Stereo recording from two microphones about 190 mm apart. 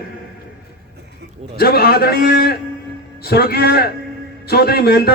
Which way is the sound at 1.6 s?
55° left (ahead or behind).